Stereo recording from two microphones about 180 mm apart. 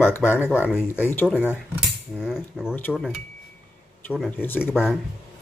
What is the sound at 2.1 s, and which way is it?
Speech, 5° right (ahead or behind).